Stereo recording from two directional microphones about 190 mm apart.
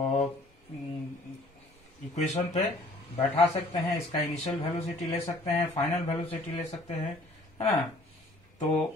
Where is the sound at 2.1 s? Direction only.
35° left (ahead or behind).